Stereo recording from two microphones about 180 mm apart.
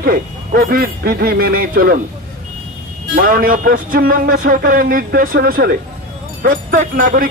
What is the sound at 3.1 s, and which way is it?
A man's voice, 50° right (ahead or behind).